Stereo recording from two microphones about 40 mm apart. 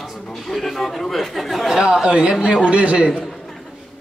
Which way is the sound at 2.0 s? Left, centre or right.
Right.